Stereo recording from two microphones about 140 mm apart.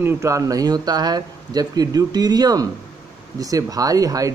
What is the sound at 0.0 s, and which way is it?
Speech, 20° right (ahead or behind).